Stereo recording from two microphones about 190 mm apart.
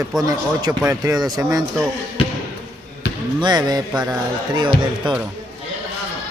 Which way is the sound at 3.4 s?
20° right (ahead or behind).